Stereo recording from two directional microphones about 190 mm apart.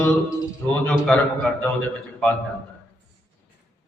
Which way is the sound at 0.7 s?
5° left (ahead or behind).